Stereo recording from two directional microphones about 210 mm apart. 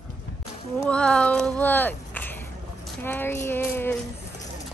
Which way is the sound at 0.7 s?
5° left (ahead or behind).